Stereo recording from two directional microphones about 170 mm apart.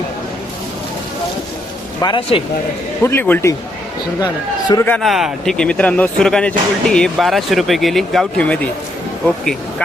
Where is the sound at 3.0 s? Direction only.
10° left (ahead or behind).